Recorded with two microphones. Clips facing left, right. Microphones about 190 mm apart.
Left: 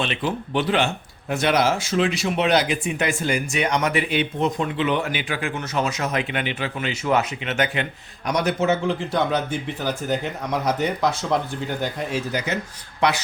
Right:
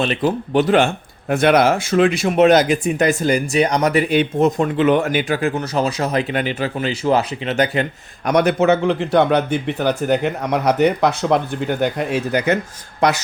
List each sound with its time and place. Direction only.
0.0 s speech: 40° right (ahead or behind)
8.3 s speech: 60° right (ahead or behind)
13.0 s speech: 45° right (ahead or behind)